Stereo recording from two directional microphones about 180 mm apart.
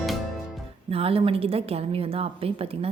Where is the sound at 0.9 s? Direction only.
30° right (ahead or behind).